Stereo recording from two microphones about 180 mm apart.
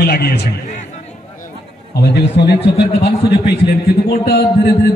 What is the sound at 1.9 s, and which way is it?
A man's voice, 65° left (ahead or behind).